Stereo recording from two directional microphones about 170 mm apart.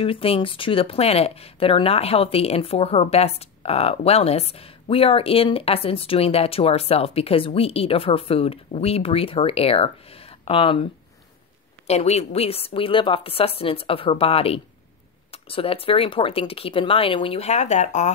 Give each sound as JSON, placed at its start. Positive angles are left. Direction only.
{"t": 0.0, "sound": "speech", "side_deg": 35}
{"t": 11.9, "sound": "speech", "side_deg": 40}